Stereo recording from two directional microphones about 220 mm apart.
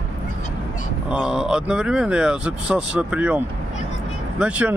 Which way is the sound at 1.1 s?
5° right (ahead or behind).